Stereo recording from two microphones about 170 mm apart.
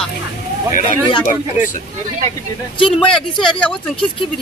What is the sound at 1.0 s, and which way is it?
Speech, 30° left (ahead or behind).